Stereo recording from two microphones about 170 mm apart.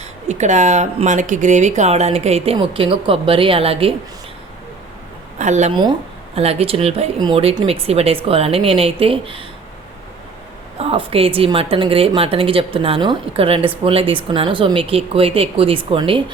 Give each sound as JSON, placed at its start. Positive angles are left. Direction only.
{"t": 0.0, "sound": "speech", "side_deg": -45}
{"t": 5.4, "sound": "speech", "side_deg": -45}
{"t": 10.8, "sound": "speech", "side_deg": -35}